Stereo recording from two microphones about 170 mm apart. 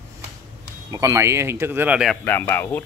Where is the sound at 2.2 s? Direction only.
10° left (ahead or behind).